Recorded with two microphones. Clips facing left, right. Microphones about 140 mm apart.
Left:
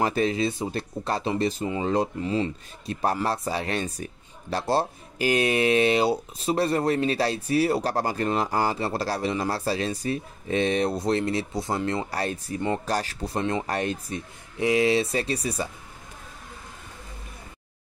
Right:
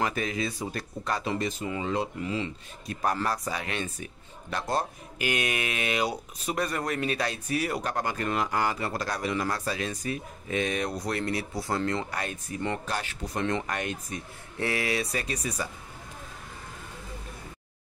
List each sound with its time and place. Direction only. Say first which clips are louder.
0.0 s speech: left 6 dB; 30° left (ahead or behind)
12.1 s speech: left 5 dB; 35° left (ahead or behind)
14.6 s speech: left 8 dB; 20° left (ahead or behind)